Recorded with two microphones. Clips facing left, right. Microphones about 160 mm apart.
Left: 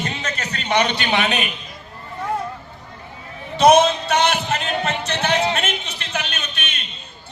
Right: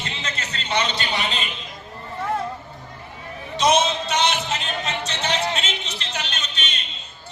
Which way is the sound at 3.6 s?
55° left (ahead or behind).